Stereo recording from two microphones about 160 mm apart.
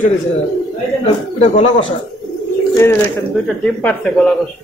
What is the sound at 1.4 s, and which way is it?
Speech, 40° left (ahead or behind).